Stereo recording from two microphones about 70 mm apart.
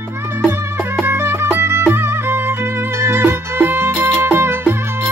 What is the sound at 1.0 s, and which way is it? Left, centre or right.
Music, right.